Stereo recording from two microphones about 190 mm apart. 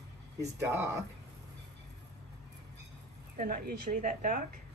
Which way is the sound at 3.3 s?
45° right (ahead or behind).